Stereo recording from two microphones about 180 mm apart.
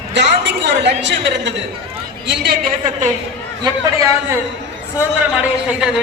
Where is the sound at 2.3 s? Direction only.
60° right (ahead or behind).